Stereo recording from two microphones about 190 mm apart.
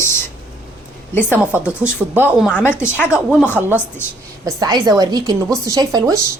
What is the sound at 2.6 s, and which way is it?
Speech, 10° left (ahead or behind).